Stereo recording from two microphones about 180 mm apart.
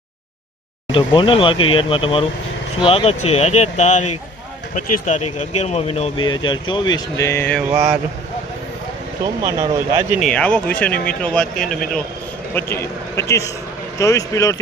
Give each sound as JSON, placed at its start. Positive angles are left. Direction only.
{"t": 0.9, "sound": "speech", "side_deg": 30}
{"t": 7.6, "sound": "speech", "side_deg": -20}
{"t": 9.2, "sound": "speech", "side_deg": -20}
{"t": 10.2, "sound": "speech", "side_deg": 5}
{"t": 12.7, "sound": "speech", "side_deg": 15}